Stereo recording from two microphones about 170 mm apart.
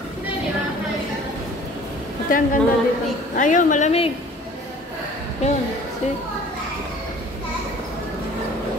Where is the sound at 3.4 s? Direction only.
50° left (ahead or behind).